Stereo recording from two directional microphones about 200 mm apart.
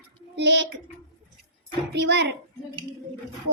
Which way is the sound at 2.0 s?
60° right (ahead or behind).